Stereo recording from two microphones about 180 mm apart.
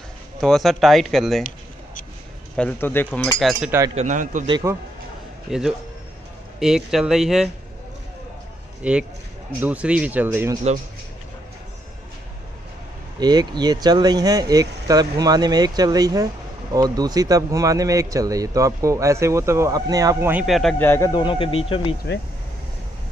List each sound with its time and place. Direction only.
0.4 s speech: centre (ahead or behind)
2.5 s speech: 10° left (ahead or behind)
3.3 s speech: centre (ahead or behind)
3.9 s a man's voice: 40° right (ahead or behind)
4.5 s speech: 25° right (ahead or behind)
5.5 s speech: centre (ahead or behind)
8.8 s speech: 5° right (ahead or behind)
13.2 s speech: 20° right (ahead or behind); by 20.7 s centre (ahead or behind)
20.8 s speech: 15° left (ahead or behind)
21.1 s speech: 25° left (ahead or behind)